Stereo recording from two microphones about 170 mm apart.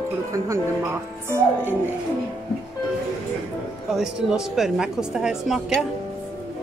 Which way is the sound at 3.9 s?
Centre (ahead or behind).